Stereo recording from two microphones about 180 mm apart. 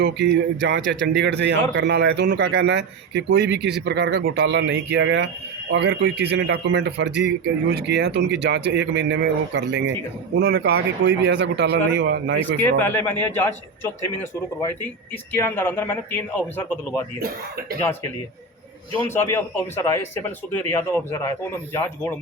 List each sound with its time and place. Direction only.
0.0 s a man's voice: 70° right (ahead or behind)
12.5 s a man's voice: 10° left (ahead or behind)
15.3 s a man's voice: 10° left (ahead or behind)
17.2 s speech: 55° right (ahead or behind)
19.1 s a man's voice: 15° left (ahead or behind)